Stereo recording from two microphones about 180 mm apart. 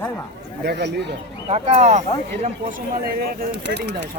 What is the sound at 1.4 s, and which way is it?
Speech, 35° right (ahead or behind).